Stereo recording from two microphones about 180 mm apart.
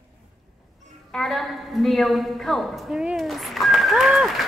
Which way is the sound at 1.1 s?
Centre (ahead or behind).